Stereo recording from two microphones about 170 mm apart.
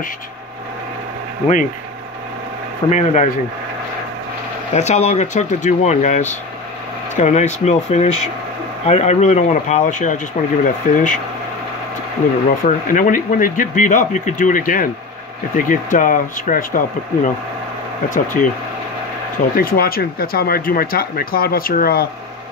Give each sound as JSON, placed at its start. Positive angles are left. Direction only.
{"t": 2.9, "sound": "speech", "side_deg": 45}
{"t": 4.7, "sound": "speech", "side_deg": 40}
{"t": 12.4, "sound": "speech", "side_deg": 50}
{"t": 19.5, "sound": "speech", "side_deg": 60}